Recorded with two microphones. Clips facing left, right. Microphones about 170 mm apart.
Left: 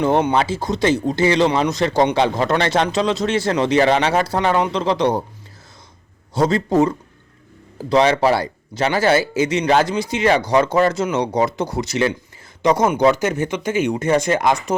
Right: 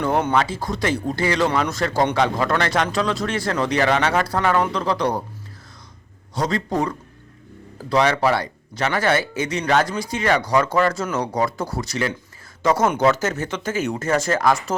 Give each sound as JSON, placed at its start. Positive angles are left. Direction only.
{"t": 0.0, "sound": "speech", "side_deg": 25}
{"t": 6.3, "sound": "speech", "side_deg": 25}